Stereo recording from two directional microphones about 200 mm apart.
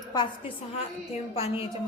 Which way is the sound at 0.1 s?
20° left (ahead or behind).